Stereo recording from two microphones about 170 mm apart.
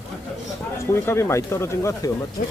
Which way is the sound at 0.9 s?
15° left (ahead or behind).